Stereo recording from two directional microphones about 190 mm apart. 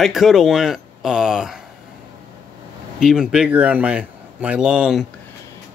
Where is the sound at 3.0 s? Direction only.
Centre (ahead or behind).